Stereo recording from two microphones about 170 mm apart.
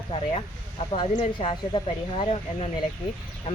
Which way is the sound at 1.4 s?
30° left (ahead or behind).